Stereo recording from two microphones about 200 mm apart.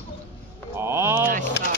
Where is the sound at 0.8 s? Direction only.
10° right (ahead or behind).